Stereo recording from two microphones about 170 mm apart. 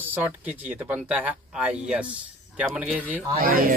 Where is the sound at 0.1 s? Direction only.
10° right (ahead or behind).